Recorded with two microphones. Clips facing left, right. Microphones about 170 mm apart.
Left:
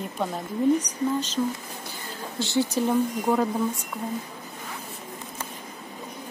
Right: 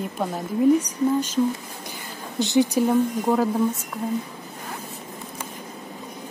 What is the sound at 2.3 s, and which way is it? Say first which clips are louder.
Speech: right 5 dB; 15° right (ahead or behind).